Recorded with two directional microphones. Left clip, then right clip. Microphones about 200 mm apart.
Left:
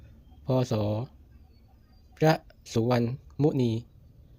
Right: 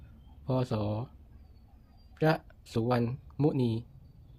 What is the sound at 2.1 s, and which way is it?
Speech, 20° left (ahead or behind).